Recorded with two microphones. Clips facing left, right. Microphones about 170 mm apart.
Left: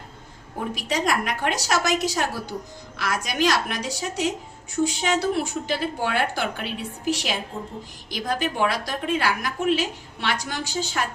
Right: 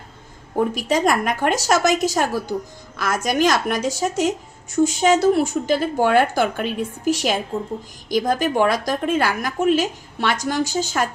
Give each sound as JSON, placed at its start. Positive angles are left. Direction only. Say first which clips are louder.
{"t": 0.5, "sound": "a woman's voice", "louder": "right 7 dB", "side_deg": -50}